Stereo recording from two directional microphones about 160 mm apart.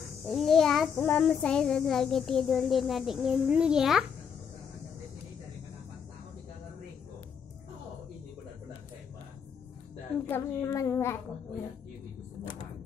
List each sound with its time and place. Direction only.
0.3 s a child's voice: centre (ahead or behind)
10.2 s speech: 15° left (ahead or behind)